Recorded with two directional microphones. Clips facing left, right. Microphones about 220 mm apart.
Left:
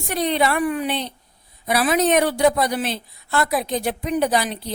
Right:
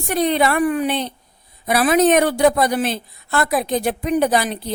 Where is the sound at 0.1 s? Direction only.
50° right (ahead or behind).